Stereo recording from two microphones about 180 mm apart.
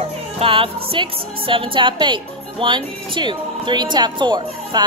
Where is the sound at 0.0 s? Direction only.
30° right (ahead or behind).